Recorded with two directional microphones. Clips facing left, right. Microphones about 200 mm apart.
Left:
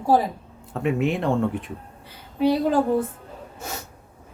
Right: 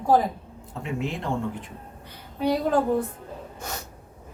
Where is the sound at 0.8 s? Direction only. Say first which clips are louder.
Left 8 dB; 65° left (ahead or behind).